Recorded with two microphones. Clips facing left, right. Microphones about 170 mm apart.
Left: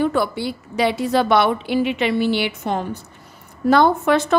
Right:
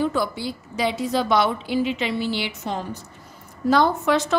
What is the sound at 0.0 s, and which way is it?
A woman's voice, 60° left (ahead or behind).